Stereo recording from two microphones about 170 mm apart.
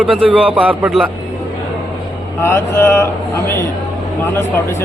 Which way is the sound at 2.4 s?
15° left (ahead or behind).